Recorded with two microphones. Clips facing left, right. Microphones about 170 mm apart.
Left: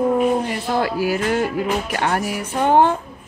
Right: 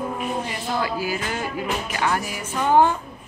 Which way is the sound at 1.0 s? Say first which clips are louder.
Left 7 dB; 65° left (ahead or behind).